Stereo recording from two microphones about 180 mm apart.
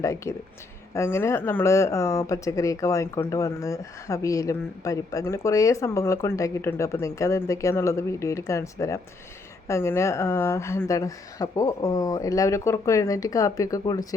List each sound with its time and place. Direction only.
0.0 s speech: 15° left (ahead or behind)